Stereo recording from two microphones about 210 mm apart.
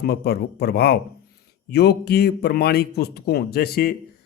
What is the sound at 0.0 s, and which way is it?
A man's voice, 50° left (ahead or behind).